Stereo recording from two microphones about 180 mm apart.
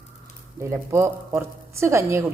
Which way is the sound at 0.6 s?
15° right (ahead or behind).